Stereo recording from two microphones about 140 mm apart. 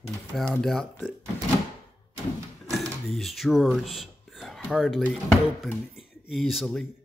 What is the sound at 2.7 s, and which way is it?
Speech, centre (ahead or behind).